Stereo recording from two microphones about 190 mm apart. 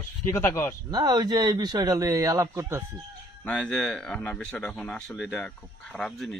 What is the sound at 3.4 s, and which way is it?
Speech, 5° left (ahead or behind).